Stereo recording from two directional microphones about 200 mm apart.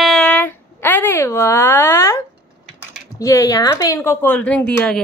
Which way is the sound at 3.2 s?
15° left (ahead or behind).